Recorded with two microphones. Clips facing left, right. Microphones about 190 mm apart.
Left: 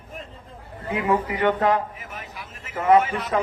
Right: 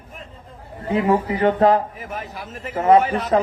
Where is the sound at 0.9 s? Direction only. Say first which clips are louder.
Right 4 dB; 30° right (ahead or behind).